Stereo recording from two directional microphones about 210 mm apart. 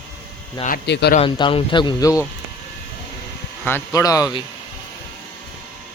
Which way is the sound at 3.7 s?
15° left (ahead or behind).